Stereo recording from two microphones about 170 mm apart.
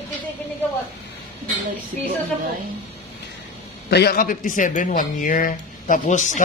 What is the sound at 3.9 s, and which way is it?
Speech, 65° left (ahead or behind).